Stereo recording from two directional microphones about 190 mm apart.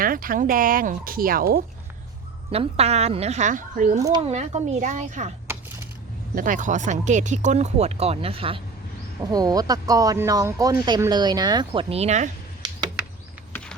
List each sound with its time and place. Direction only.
0.0 s speech: 50° right (ahead or behind)
2.5 s speech: 35° right (ahead or behind)
6.3 s speech: 45° right (ahead or behind)
12.6 s a sound: 20° right (ahead or behind)